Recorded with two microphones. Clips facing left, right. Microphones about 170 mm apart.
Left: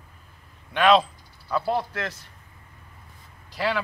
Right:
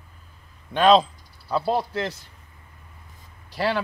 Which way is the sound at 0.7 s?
35° right (ahead or behind).